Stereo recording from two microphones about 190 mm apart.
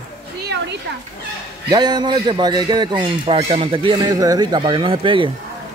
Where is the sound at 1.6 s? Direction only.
20° right (ahead or behind).